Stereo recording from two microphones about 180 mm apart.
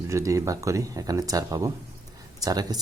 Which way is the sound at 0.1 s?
15° right (ahead or behind).